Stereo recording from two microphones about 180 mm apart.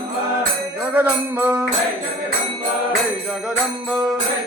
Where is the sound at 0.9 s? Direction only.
10° right (ahead or behind).